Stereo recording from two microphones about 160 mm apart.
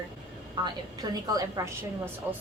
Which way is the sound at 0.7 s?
25° right (ahead or behind).